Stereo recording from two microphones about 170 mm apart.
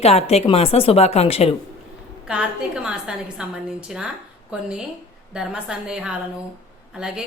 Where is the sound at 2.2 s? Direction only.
5° right (ahead or behind).